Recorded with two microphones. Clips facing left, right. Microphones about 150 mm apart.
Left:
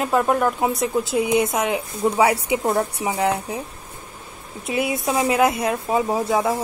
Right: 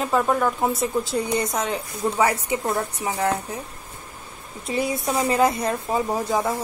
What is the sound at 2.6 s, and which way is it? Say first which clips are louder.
Speech: left 4 dB; 25° left (ahead or behind).